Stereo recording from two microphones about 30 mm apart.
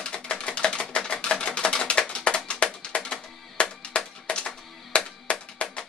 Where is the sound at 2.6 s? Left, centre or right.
Left.